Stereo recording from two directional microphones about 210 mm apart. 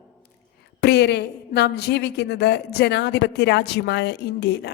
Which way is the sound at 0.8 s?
50° left (ahead or behind).